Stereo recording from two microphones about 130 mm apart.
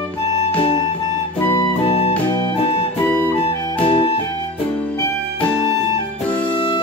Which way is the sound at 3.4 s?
45° left (ahead or behind).